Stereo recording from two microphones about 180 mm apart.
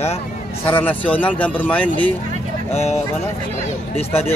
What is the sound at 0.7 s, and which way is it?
Speech, 10° left (ahead or behind).